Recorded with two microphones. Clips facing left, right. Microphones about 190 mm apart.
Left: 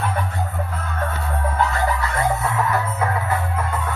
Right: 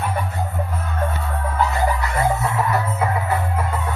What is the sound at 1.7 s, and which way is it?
Music, 15° right (ahead or behind).